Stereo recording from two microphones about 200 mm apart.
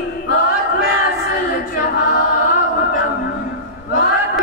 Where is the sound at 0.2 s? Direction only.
50° left (ahead or behind).